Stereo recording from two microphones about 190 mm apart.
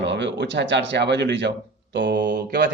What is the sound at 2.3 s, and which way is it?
Speech, 50° right (ahead or behind).